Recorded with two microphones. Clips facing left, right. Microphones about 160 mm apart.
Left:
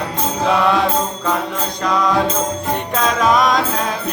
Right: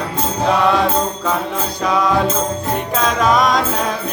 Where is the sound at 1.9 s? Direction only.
5° right (ahead or behind).